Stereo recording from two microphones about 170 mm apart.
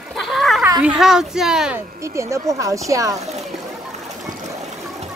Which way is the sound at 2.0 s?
15° right (ahead or behind).